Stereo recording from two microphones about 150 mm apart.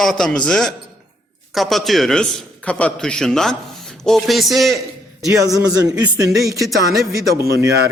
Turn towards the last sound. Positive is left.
turn(degrees=-20)  # may be behind; listen again after turning